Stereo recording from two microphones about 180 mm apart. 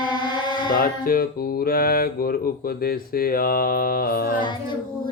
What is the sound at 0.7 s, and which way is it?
Music, 50° left (ahead or behind).